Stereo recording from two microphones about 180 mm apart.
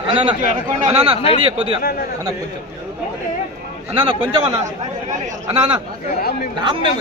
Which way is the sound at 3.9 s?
30° right (ahead or behind).